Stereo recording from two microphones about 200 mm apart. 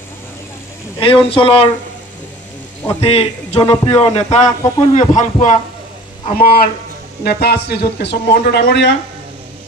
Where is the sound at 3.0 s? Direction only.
30° left (ahead or behind).